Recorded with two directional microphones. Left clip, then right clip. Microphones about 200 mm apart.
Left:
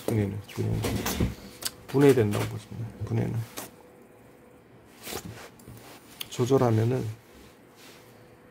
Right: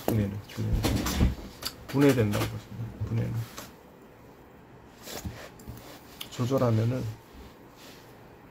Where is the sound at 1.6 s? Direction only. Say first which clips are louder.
Left 3 dB; 45° left (ahead or behind).